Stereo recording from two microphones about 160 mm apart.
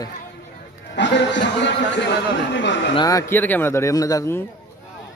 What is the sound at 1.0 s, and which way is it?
Speech, 90° left.